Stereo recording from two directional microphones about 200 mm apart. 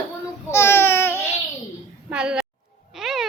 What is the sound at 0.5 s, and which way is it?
Child singing, 10° left (ahead or behind).